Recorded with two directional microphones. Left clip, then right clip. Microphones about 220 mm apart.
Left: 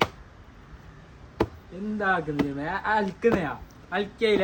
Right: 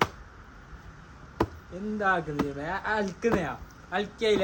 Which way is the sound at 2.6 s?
35° left (ahead or behind).